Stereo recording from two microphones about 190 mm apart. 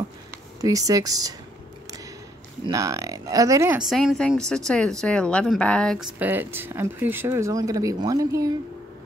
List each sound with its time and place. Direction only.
0.6 s speech: 20° right (ahead or behind)
2.6 s speech: 20° right (ahead or behind)
3.8 s speech: centre (ahead or behind)
6.1 s speech: 10° right (ahead or behind)